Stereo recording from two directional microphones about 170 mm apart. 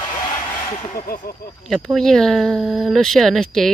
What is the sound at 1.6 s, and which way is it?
Speech, centre (ahead or behind).